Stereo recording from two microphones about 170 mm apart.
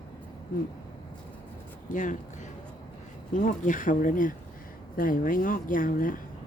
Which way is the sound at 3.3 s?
50° left (ahead or behind).